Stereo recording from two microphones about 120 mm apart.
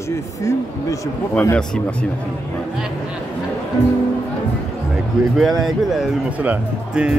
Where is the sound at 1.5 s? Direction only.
10° left (ahead or behind).